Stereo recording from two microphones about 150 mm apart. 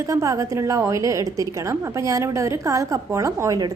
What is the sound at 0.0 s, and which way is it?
A woman's voice, 20° right (ahead or behind).